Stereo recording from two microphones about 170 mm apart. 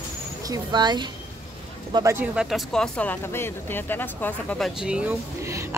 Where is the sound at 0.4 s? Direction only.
25° right (ahead or behind).